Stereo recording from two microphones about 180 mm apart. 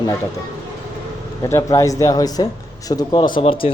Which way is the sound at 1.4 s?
15° left (ahead or behind).